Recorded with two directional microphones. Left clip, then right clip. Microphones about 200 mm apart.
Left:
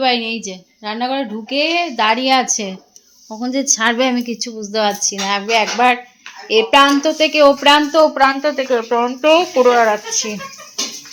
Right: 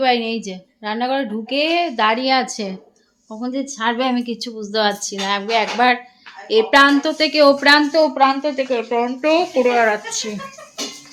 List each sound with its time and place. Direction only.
0.0 s a woman's voice: centre (ahead or behind)
3.4 s a woman's voice: 20° left (ahead or behind); by 7.8 s 5° right (ahead or behind)
8.1 s speech: 20° left (ahead or behind)
8.9 s a woman's voice: centre (ahead or behind)
9.6 s a woman's voice: 5° right (ahead or behind)